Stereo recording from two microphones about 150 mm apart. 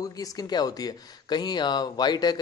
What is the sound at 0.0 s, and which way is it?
Speech, 25° left (ahead or behind).